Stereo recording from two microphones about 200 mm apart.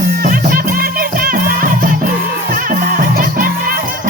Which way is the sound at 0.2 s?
45° right (ahead or behind).